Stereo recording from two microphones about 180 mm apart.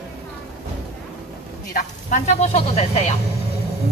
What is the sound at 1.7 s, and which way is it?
Speech, 40° left (ahead or behind).